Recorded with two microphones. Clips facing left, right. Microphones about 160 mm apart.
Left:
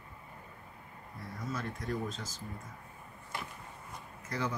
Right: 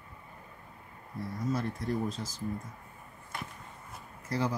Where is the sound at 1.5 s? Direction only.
35° right (ahead or behind).